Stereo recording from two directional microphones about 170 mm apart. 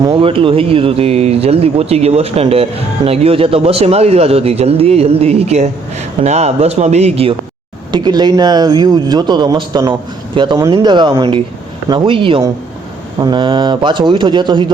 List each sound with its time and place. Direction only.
0.0 s speech: 30° right (ahead or behind)
7.9 s a man's voice: 25° right (ahead or behind)